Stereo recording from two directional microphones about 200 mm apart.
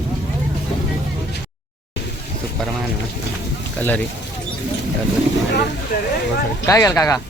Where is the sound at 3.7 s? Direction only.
10° left (ahead or behind).